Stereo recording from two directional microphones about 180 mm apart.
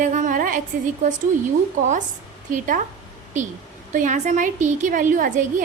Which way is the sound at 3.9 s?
45° right (ahead or behind).